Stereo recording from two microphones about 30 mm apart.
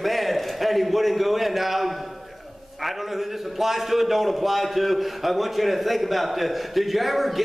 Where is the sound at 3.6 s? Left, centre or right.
Centre.